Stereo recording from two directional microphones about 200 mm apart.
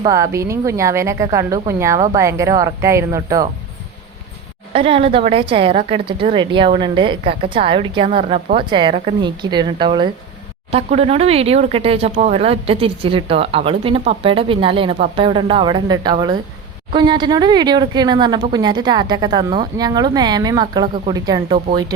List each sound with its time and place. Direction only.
0.0 s a woman's voice: 15° right (ahead or behind)
4.7 s a woman's voice: 30° right (ahead or behind)